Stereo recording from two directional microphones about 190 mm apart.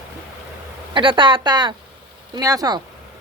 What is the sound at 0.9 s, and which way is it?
Speech, 25° right (ahead or behind).